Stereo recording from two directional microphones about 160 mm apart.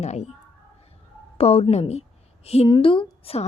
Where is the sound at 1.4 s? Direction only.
40° left (ahead or behind).